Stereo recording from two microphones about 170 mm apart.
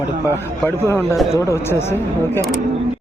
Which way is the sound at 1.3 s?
15° left (ahead or behind).